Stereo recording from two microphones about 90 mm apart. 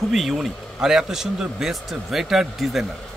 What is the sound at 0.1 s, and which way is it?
Speech, centre (ahead or behind).